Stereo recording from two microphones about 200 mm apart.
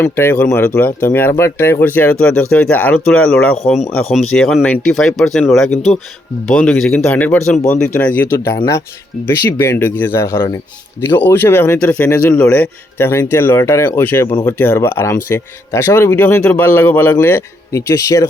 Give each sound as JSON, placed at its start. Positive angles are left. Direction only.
{"t": 0.0, "sound": "speech", "side_deg": 10}